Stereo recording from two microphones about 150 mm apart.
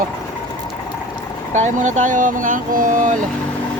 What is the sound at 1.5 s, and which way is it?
Speech, 55° right (ahead or behind).